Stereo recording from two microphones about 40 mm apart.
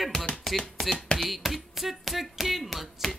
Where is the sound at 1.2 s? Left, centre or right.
Centre.